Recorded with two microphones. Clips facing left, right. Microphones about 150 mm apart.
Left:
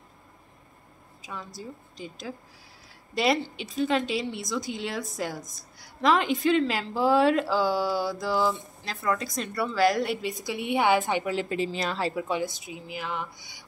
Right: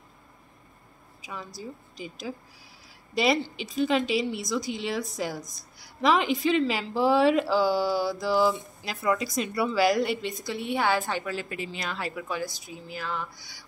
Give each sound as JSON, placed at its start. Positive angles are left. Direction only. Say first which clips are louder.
{"t": 1.2, "sound": "a woman's voice", "louder": "right 1 dB", "side_deg": 0}
{"t": 10.4, "sound": "a woman's voice", "louder": "left 3 dB", "side_deg": 15}